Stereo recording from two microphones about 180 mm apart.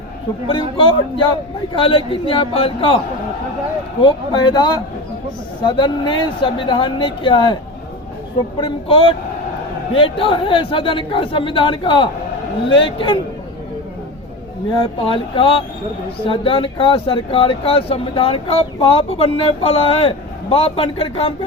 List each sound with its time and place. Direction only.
0.4 s speech: 30° left (ahead or behind)
4.0 s speech: 25° left (ahead or behind)
8.6 s speech: 30° left (ahead or behind)
14.7 s speech: 30° left (ahead or behind)